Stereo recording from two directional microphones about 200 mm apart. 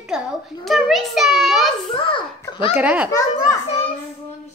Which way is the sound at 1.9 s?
25° left (ahead or behind).